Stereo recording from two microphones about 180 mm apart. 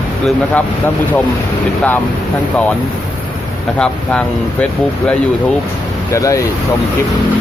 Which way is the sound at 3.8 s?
5° left (ahead or behind).